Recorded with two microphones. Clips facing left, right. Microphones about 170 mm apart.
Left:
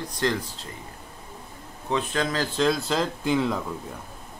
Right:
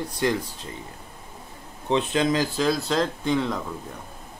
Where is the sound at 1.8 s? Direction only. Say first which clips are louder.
Right 4 dB; 20° right (ahead or behind).